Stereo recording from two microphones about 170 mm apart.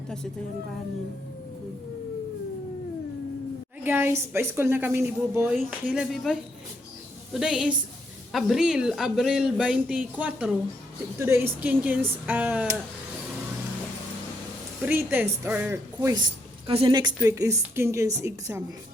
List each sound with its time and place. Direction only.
3.8 s a woman's voice: 15° right (ahead or behind)
7.3 s a man's voice: 5° right (ahead or behind)
14.8 s a woman's voice: 10° right (ahead or behind)
16.6 s a woman's voice: 30° right (ahead or behind)